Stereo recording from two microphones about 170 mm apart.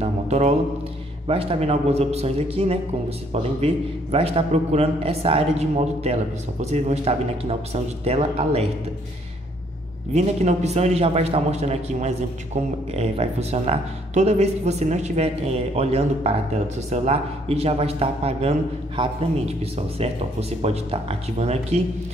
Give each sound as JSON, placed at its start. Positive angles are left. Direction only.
{"t": 0.0, "sound": "a man's voice", "side_deg": -40}
{"t": 10.1, "sound": "a man's voice", "side_deg": -40}